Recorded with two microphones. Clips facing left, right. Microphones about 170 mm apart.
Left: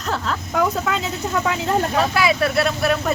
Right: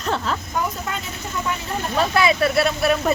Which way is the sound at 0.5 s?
85° left.